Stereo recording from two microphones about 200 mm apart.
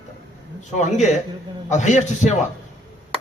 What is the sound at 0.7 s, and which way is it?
A man's voice, 35° left (ahead or behind).